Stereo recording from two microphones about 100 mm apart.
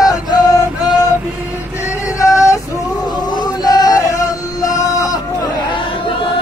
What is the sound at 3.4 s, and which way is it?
Male singing, 40° left (ahead or behind).